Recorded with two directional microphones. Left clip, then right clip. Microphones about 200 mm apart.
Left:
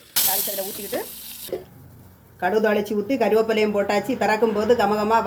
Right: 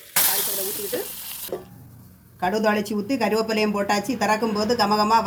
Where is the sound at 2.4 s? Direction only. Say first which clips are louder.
Left 2 dB; 40° right (ahead or behind).